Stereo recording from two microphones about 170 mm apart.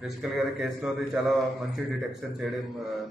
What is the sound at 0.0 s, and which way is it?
A man's voice, centre (ahead or behind).